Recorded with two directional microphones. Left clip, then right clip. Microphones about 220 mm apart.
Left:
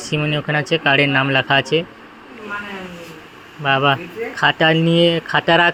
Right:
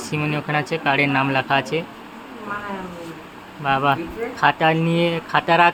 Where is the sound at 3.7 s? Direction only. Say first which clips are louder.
Left 3 dB; 15° left (ahead or behind).